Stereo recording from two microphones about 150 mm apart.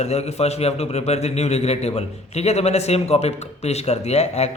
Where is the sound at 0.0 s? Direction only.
45° left (ahead or behind).